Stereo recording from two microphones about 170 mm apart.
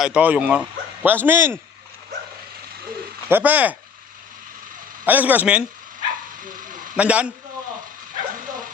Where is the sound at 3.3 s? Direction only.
10° right (ahead or behind).